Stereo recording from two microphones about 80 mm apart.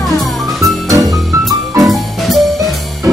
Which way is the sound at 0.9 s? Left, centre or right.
Right.